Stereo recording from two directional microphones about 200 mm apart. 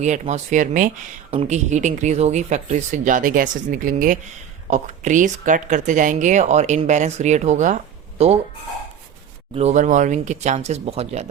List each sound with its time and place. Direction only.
0.0 s speech: 35° right (ahead or behind)
9.6 s speech: 35° right (ahead or behind)